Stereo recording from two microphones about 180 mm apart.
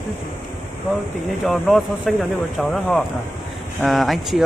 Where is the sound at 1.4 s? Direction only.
5° left (ahead or behind).